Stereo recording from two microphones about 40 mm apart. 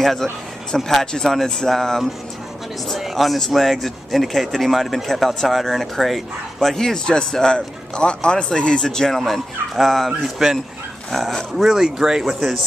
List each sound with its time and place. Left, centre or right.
0.0 s a man's voice: centre; by 8.8 s left
8.8 s speech: centre